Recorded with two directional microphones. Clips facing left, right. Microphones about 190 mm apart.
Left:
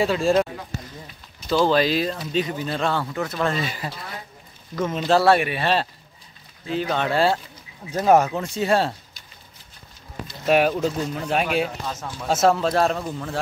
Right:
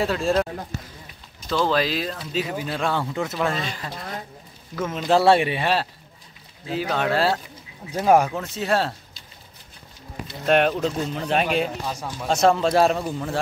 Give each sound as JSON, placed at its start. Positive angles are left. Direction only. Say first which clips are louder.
{"t": 0.0, "sound": "speech", "louder": "left 2 dB", "side_deg": 0}
{"t": 1.5, "sound": "speech", "louder": "left 3 dB", "side_deg": 0}
{"t": 3.0, "sound": "speech", "louder": "right 1 dB", "side_deg": -20}
{"t": 3.3, "sound": "speech", "louder": "left 2 dB", "side_deg": -5}
{"t": 3.6, "sound": "speech", "louder": "left 2 dB", "side_deg": 10}
{"t": 5.0, "sound": "speech", "louder": "right 1 dB", "side_deg": -20}
{"t": 5.6, "sound": "speech", "louder": "left 1 dB", "side_deg": -5}
{"t": 10.4, "sound": "speech", "louder": "even", "side_deg": 5}
{"t": 11.9, "sound": "speech", "louder": "right 1 dB", "side_deg": -10}
{"t": 12.3, "sound": "speech", "louder": "even", "side_deg": 5}